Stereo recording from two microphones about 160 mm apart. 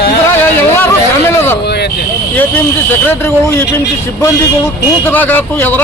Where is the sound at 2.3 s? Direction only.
15° left (ahead or behind).